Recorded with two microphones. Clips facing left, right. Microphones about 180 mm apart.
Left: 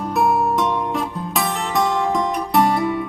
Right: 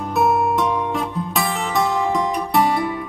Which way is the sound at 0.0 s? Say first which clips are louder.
Even; centre (ahead or behind).